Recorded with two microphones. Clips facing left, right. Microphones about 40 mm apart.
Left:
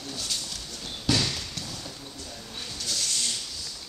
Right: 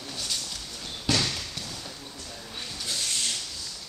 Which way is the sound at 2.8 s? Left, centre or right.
Centre.